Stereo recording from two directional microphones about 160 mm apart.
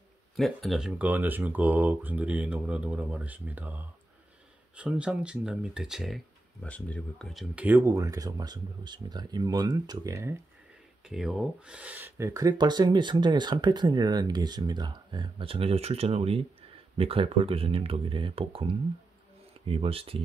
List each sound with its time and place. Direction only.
0.4 s speech: centre (ahead or behind); by 10.3 s 20° right (ahead or behind)
11.1 s speech: 5° right (ahead or behind); by 20.2 s 35° right (ahead or behind)